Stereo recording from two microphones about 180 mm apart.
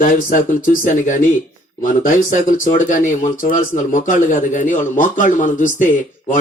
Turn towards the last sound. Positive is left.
turn(degrees=45)  # may be behind; listen again after turning